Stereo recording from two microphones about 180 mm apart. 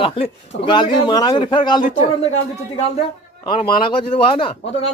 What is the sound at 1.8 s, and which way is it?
Speech, 45° left (ahead or behind).